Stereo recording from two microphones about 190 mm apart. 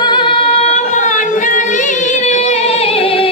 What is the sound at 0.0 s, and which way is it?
Singing, 25° left (ahead or behind).